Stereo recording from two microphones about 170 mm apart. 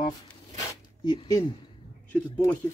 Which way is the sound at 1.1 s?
20° left (ahead or behind).